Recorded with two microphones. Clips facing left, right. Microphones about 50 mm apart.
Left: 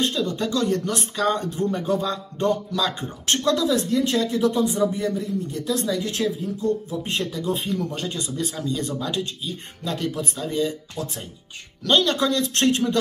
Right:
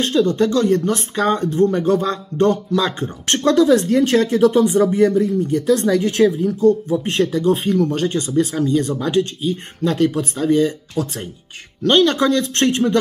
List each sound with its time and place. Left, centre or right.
0.0 s speech: right
2.0 s speech: right
2.7 s speech: right
4.4 s speech: right
7.1 s speech: right
8.4 s speech: right
11.0 s speech: right
11.8 s speech: right